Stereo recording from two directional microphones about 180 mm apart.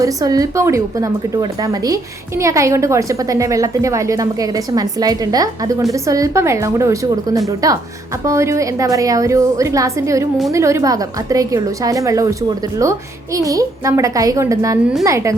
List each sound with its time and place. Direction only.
0.0 s a woman's voice: 20° right (ahead or behind)